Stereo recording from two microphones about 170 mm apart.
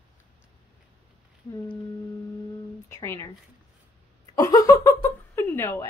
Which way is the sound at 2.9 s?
15° left (ahead or behind).